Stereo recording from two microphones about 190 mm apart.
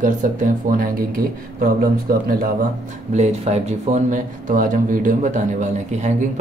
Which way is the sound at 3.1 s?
35° right (ahead or behind).